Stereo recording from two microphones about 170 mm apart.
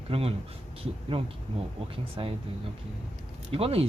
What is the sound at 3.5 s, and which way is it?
Speech, 35° right (ahead or behind).